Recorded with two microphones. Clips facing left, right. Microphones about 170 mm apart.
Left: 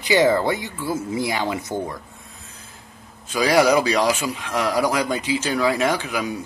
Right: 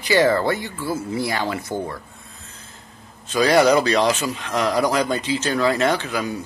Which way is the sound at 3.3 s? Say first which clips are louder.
Right 1 dB; 5° left (ahead or behind).